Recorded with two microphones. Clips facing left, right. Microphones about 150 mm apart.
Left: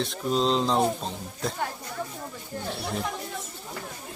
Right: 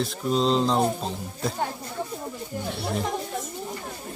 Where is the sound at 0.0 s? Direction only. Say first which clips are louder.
Right 2 dB; centre (ahead or behind).